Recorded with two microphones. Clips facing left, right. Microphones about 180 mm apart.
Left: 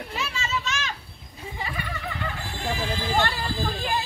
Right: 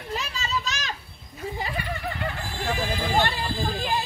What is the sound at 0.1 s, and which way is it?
Children playing, 40° right (ahead or behind).